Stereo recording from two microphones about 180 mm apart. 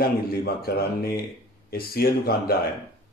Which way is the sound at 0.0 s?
55° left (ahead or behind).